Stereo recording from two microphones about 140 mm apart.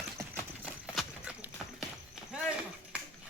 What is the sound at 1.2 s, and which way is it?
Clip-clop, 5° right (ahead or behind).